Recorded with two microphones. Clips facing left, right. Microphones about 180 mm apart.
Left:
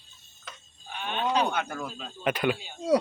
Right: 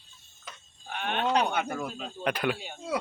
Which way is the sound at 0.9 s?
60° right (ahead or behind).